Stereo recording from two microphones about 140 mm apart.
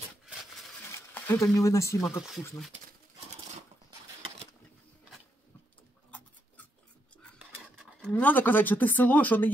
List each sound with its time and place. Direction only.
1.1 s speech: 15° left (ahead or behind)
8.0 s speech: 10° left (ahead or behind)